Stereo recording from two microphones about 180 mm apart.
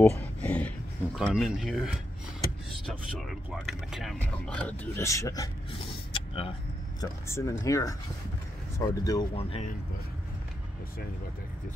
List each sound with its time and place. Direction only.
0.1 s speech: 10° left (ahead or behind)
5.7 s a sound: 30° left (ahead or behind)
7.0 s speech: 15° left (ahead or behind)
9.4 s speech: 35° left (ahead or behind)